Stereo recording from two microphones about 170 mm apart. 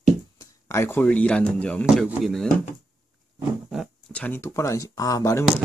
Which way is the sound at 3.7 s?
5° left (ahead or behind).